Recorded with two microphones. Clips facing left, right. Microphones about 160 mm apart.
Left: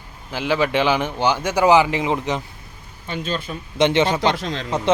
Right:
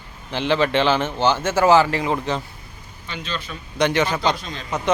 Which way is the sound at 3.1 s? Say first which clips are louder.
Left 5 dB; 45° left (ahead or behind).